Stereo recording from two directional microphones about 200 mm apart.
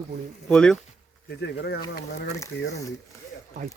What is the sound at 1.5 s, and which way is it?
Speech, 55° left (ahead or behind).